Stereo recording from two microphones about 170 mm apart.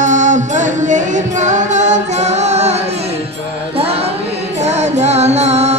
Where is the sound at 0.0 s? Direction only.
45° right (ahead or behind).